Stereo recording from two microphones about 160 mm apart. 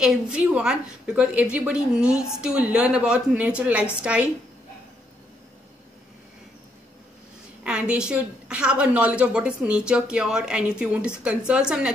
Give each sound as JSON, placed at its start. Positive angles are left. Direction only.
{"t": 0.0, "sound": "a woman's voice", "side_deg": -5}
{"t": 7.6, "sound": "a woman's voice", "side_deg": -5}